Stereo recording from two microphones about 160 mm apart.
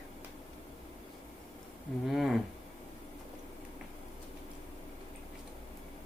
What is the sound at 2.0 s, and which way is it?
Speech, centre (ahead or behind).